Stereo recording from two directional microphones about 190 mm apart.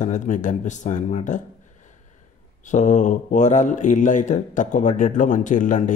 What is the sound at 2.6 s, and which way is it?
Speech, 40° left (ahead or behind).